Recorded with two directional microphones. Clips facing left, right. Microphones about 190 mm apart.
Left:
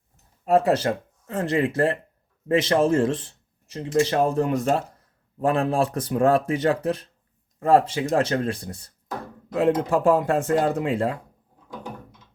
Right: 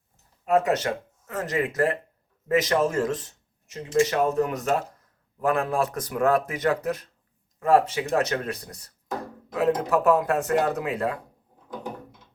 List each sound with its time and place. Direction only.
0.4 s speech: 30° left (ahead or behind)
9.9 s speech: 30° left (ahead or behind)